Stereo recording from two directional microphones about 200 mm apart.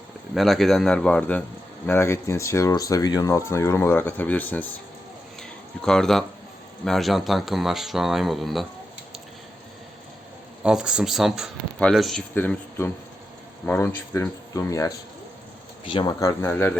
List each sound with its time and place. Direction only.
0.3 s speech: centre (ahead or behind)
5.4 s a sound: 5° left (ahead or behind)
6.8 s speech: centre (ahead or behind)
10.6 s speech: 5° right (ahead or behind); by 16.3 s 25° left (ahead or behind)
16.4 s speech: 10° left (ahead or behind)